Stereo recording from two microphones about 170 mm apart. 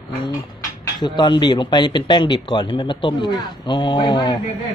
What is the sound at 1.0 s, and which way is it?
A man's voice, 25° left (ahead or behind).